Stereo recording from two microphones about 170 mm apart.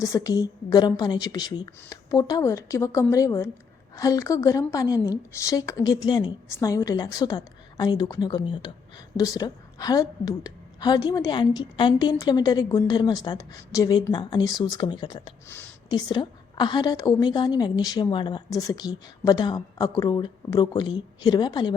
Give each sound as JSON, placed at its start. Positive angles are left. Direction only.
{"t": 0.0, "sound": "a woman's voice", "side_deg": 20}